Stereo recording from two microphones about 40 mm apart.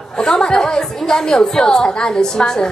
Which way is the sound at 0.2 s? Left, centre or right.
Centre.